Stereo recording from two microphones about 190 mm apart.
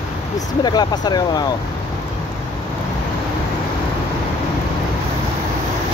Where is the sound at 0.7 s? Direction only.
20° left (ahead or behind).